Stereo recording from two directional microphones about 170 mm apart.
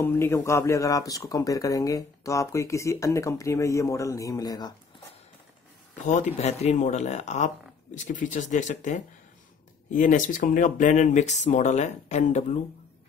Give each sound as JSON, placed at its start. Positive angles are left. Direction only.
{"t": 0.0, "sound": "speech", "side_deg": 15}
{"t": 6.0, "sound": "speech", "side_deg": 40}